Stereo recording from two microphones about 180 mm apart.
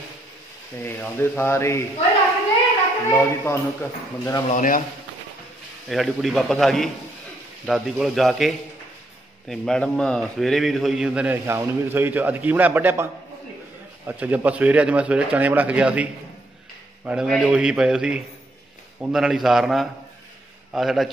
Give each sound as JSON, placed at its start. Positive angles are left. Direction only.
{"t": 0.8, "sound": "speech", "side_deg": 15}
{"t": 3.1, "sound": "speech", "side_deg": 15}
{"t": 4.5, "sound": "speech", "side_deg": 45}
{"t": 5.9, "sound": "a man's voice", "side_deg": 0}